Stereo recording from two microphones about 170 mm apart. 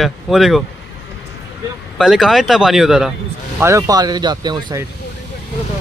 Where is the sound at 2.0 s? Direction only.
Centre (ahead or behind).